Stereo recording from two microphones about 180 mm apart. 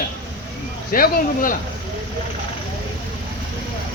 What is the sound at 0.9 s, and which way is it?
Speech, 55° left (ahead or behind).